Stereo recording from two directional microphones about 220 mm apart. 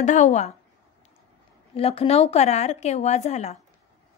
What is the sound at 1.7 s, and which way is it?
A woman's voice, 25° left (ahead or behind).